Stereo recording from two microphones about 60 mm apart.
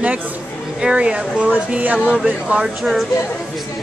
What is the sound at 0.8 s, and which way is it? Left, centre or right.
Speech, centre.